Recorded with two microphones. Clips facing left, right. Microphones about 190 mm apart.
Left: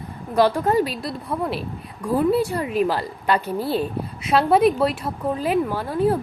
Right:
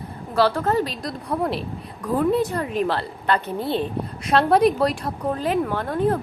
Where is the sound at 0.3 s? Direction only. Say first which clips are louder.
Left 2 dB; 15° left (ahead or behind).